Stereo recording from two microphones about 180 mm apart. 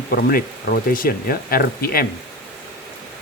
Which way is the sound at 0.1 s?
55° left (ahead or behind).